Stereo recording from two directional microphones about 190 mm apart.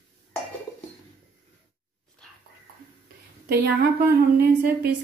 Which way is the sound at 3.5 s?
55° right (ahead or behind).